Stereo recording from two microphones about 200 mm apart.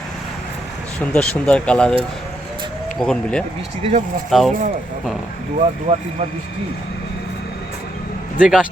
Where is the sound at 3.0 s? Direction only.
5° left (ahead or behind).